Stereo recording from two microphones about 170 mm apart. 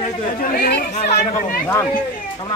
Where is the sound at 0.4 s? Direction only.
65° left (ahead or behind).